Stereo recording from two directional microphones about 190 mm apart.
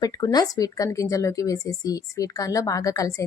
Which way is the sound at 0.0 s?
20° left (ahead or behind).